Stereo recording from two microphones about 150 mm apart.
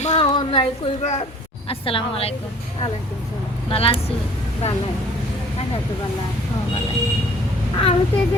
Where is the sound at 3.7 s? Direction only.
40° left (ahead or behind).